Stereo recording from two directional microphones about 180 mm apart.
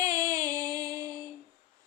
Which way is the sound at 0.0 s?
20° right (ahead or behind).